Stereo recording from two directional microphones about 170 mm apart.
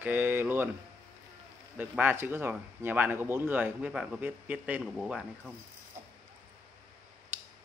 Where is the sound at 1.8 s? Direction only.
10° right (ahead or behind).